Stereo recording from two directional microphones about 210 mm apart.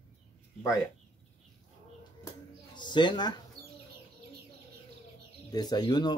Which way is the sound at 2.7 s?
20° left (ahead or behind).